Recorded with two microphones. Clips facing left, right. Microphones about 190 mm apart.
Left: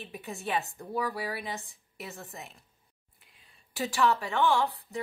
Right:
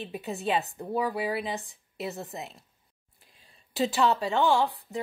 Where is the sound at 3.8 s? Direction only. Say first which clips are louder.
Right 3 dB; 25° right (ahead or behind).